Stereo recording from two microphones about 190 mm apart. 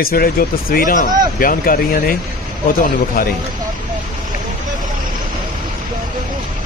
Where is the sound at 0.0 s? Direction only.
50° left (ahead or behind).